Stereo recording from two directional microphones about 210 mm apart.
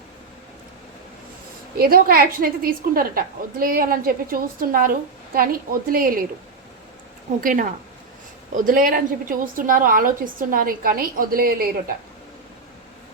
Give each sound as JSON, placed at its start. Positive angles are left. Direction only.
{"t": 1.8, "sound": "a woman's voice", "side_deg": -45}
{"t": 7.4, "sound": "a woman's voice", "side_deg": -40}